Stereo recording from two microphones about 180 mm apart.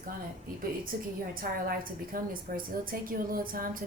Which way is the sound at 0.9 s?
55° right (ahead or behind).